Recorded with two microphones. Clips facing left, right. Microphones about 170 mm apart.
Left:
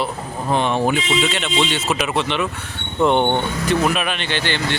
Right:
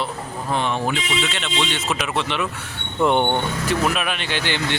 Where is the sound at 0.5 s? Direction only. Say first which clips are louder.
Left 4 dB; 20° left (ahead or behind).